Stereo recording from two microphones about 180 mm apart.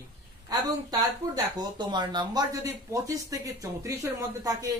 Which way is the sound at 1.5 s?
25° right (ahead or behind).